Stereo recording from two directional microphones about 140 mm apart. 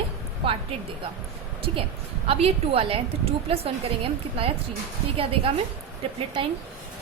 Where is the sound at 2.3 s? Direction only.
45° right (ahead or behind).